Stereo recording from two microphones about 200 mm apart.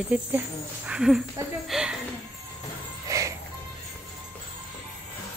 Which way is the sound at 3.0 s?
15° right (ahead or behind).